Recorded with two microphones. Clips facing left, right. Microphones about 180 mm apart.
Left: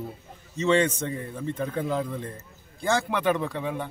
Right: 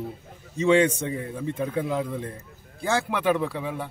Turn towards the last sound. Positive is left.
turn(degrees=-5)  # may be behind; listen again after turning